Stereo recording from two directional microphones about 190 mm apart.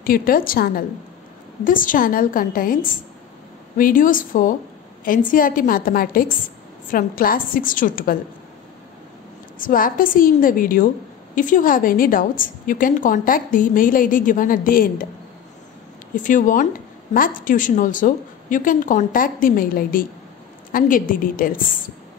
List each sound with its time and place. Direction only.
0.0 s a woman's voice: 50° left (ahead or behind)
9.6 s a woman's voice: 45° left (ahead or behind)
16.2 s a woman's voice: 45° left (ahead or behind)